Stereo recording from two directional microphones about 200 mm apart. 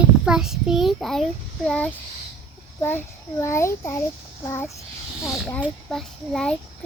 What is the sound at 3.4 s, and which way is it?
A child's voice, 15° left (ahead or behind).